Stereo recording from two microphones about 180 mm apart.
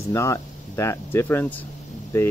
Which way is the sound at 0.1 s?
15° left (ahead or behind).